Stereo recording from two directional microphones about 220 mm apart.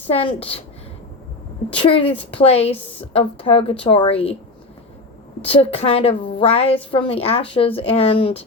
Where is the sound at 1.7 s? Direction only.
25° left (ahead or behind).